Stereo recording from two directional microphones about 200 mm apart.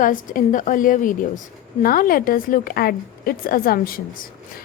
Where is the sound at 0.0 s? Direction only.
40° left (ahead or behind).